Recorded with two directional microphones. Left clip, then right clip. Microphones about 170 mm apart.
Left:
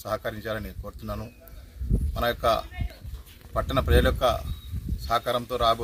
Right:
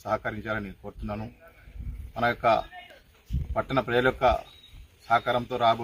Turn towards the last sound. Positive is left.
turn(degrees=45)  # may be behind; listen again after turning